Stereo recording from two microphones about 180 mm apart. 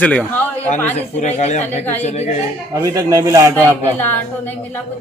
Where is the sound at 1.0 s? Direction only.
40° left (ahead or behind).